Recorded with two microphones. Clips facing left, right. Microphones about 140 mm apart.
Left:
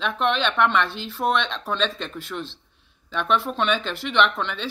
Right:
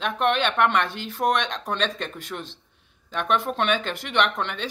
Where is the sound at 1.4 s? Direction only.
15° right (ahead or behind).